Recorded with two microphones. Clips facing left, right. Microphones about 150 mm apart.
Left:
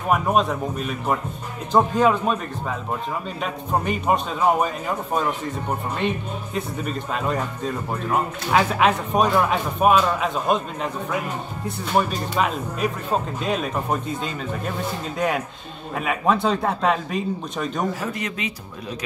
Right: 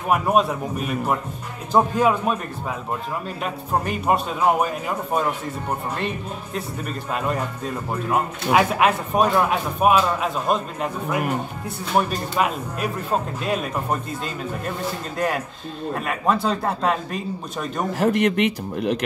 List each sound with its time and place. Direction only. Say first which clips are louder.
0.1 s speech: right 1 dB; 5° right (ahead or behind)
3.4 s speech: left 1 dB; centre (ahead or behind)
18.0 s speech: right 10 dB; 65° right (ahead or behind)